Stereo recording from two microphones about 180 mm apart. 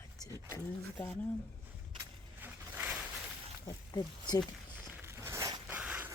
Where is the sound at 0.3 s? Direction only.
15° right (ahead or behind).